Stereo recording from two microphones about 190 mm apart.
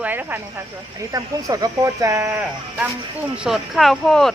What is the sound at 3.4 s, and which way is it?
Speech, centre (ahead or behind).